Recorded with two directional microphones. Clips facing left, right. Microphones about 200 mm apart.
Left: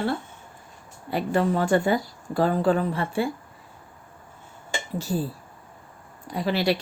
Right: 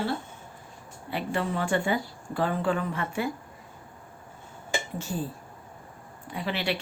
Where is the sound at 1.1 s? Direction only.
40° left (ahead or behind).